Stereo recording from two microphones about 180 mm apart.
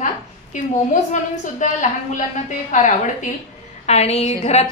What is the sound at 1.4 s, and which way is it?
A woman's voice, 45° left (ahead or behind).